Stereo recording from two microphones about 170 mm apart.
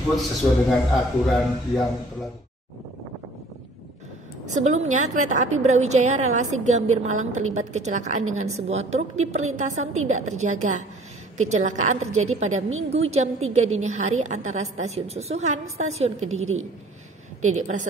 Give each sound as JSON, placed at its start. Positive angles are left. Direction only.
{"t": 1.2, "sound": "a man's voice", "side_deg": 0}
{"t": 4.5, "sound": "a woman's voice", "side_deg": -45}